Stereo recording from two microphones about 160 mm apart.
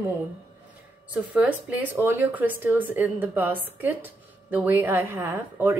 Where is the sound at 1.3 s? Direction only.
10° right (ahead or behind).